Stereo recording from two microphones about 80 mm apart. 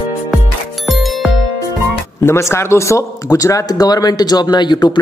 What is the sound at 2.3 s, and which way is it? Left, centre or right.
Speech, left.